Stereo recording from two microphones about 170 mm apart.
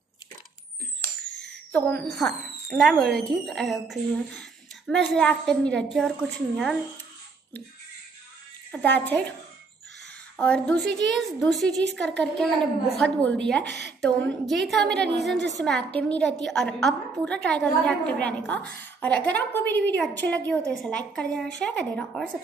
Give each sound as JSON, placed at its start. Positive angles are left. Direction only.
{"t": 1.9, "sound": "speech", "side_deg": 5}
{"t": 8.7, "sound": "a woman's voice", "side_deg": 10}
{"t": 10.3, "sound": "speech", "side_deg": 5}
{"t": 11.9, "sound": "a woman's voice", "side_deg": -90}
{"t": 12.2, "sound": "a woman's voice", "side_deg": 5}